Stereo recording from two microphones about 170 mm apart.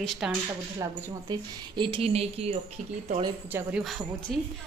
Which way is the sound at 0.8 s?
25° right (ahead or behind).